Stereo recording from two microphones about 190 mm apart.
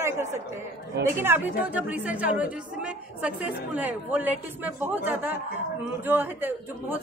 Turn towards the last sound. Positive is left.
turn(degrees=-10)  # may be behind; listen again after turning